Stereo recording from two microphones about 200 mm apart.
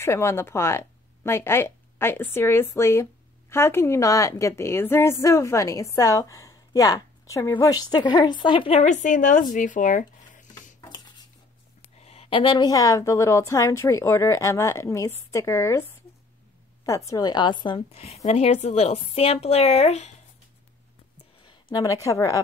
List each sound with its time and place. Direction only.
0.0 s speech: 15° left (ahead or behind); by 10.4 s 40° left (ahead or behind)
12.0 s a woman's voice: 30° left (ahead or behind)
21.5 s a woman's voice: 20° left (ahead or behind)